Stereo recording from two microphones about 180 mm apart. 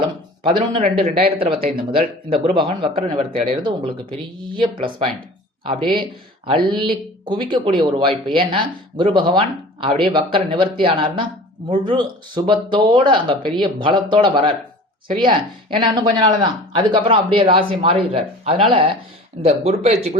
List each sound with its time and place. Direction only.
0.0 s speech: 25° right (ahead or behind)
5.6 s speech: 30° right (ahead or behind)